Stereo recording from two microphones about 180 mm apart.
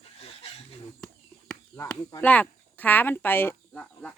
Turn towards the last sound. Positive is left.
turn(degrees=5)  # may be behind; listen again after turning